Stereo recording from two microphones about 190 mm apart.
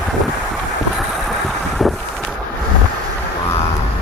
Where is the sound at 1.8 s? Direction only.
Centre (ahead or behind).